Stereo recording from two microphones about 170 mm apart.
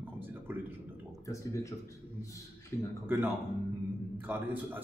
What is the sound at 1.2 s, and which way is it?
Speech, 20° left (ahead or behind).